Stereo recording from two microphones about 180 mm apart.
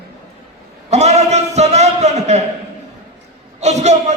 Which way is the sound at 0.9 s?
40° right (ahead or behind).